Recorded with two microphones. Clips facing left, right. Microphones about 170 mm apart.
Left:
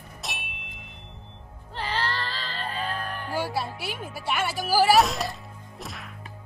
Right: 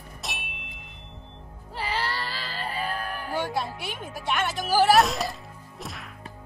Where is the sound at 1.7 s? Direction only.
10° right (ahead or behind).